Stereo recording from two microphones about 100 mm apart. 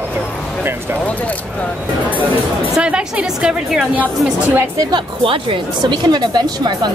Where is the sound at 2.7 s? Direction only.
10° right (ahead or behind).